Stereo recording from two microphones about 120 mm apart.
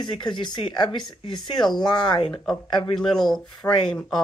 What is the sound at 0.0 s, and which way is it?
Speech, 40° left (ahead or behind).